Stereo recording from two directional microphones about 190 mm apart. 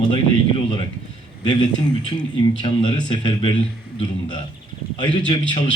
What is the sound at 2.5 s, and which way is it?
A man's voice, 25° left (ahead or behind).